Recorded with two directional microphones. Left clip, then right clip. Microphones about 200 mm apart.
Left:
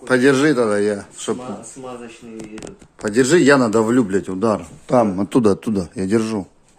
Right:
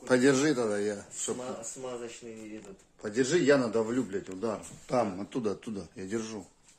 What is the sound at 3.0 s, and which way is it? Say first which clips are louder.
A man's voice: left 13 dB; 50° left (ahead or behind).